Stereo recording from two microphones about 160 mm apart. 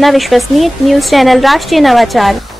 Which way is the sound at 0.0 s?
Centre (ahead or behind).